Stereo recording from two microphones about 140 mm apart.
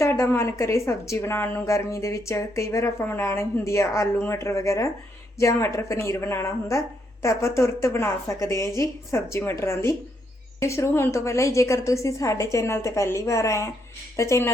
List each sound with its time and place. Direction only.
0.0 s a woman's voice: 20° left (ahead or behind)